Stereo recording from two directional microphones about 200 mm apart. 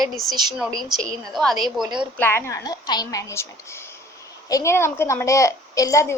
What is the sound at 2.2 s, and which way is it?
A woman's voice, 10° left (ahead or behind).